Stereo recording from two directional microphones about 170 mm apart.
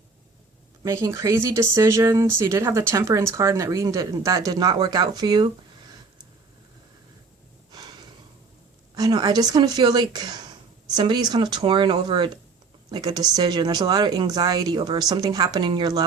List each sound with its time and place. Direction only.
0.8 s speech: 20° right (ahead or behind)
7.7 s a sound: 25° right (ahead or behind)
9.0 s speech: 25° right (ahead or behind)